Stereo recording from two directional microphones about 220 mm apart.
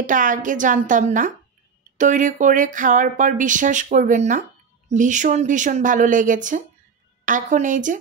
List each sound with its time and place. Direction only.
0.0 s speech: 35° right (ahead or behind)